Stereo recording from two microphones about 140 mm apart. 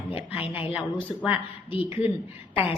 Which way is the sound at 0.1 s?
45° left (ahead or behind).